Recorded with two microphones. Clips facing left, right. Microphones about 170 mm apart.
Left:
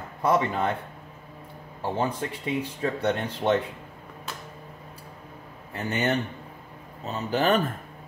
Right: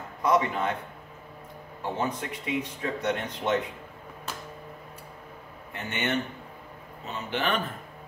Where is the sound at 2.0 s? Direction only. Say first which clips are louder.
Left 3 dB; 30° left (ahead or behind).